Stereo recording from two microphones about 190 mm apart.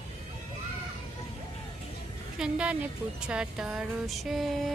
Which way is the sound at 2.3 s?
5° right (ahead or behind).